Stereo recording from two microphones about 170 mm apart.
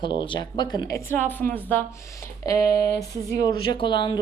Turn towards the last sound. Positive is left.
turn(degrees=25)  # may be behind; listen again after turning